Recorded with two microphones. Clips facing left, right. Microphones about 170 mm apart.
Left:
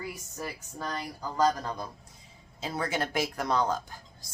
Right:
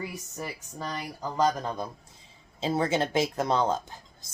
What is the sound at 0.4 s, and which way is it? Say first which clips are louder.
Speech: left 1 dB; 5° right (ahead or behind).